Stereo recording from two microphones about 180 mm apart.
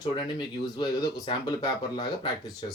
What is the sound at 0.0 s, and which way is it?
Speech, 25° left (ahead or behind).